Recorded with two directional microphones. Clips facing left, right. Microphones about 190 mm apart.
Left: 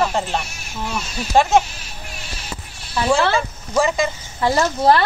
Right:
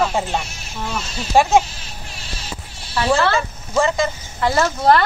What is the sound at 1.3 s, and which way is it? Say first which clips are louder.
Speech: right 1 dB; 10° right (ahead or behind).